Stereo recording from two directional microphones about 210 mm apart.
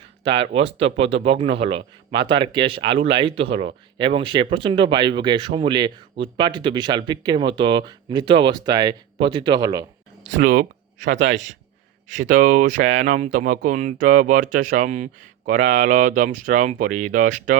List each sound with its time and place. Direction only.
0.3 s speech: 25° right (ahead or behind)
10.4 s speech: 45° right (ahead or behind)
12.1 s speech: 40° right (ahead or behind)